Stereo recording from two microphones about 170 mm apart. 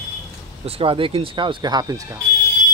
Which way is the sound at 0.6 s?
35° right (ahead or behind).